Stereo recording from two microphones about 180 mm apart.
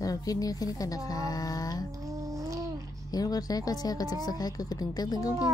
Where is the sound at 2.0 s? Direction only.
20° right (ahead or behind).